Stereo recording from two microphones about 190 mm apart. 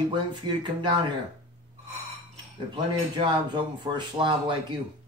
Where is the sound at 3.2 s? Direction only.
25° right (ahead or behind).